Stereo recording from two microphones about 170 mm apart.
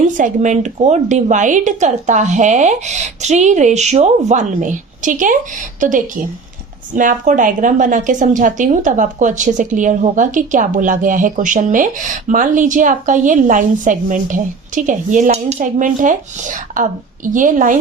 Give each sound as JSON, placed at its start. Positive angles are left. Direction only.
{"t": 0.2, "sound": "a woman's voice", "side_deg": -45}